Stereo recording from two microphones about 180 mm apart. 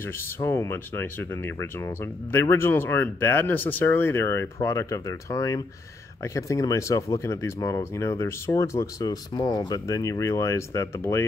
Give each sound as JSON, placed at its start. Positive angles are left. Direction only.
{"t": 0.4, "sound": "speech", "side_deg": 15}